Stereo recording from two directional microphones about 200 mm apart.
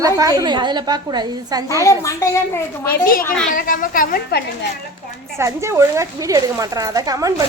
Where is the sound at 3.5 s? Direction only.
45° left (ahead or behind).